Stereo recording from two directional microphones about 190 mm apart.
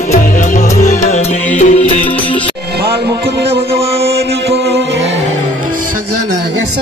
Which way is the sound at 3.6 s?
30° right (ahead or behind).